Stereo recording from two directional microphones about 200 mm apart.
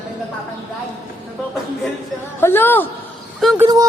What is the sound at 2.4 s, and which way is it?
Speech, 10° left (ahead or behind).